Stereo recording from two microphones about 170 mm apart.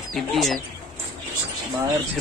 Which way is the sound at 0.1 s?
Centre (ahead or behind).